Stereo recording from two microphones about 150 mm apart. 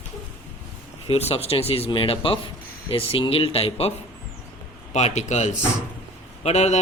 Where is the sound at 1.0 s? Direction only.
40° left (ahead or behind).